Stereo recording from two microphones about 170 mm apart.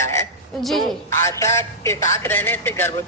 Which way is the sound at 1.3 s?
15° left (ahead or behind).